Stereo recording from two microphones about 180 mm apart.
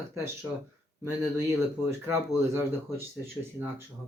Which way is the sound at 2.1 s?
15° right (ahead or behind).